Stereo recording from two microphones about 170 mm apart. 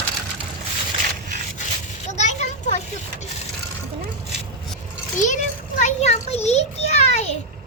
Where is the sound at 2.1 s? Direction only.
40° left (ahead or behind).